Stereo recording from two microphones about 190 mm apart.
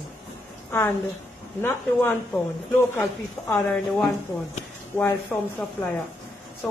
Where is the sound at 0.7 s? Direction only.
15° left (ahead or behind).